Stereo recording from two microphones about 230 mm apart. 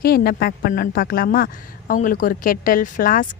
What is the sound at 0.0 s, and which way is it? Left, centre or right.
Speech, left.